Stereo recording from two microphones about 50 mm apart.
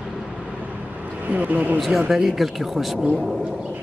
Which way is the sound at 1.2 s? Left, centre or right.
Right.